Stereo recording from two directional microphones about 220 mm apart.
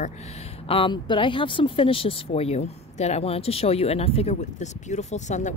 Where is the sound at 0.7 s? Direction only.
25° left (ahead or behind).